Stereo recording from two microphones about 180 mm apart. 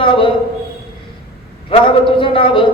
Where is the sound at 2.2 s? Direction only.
30° left (ahead or behind).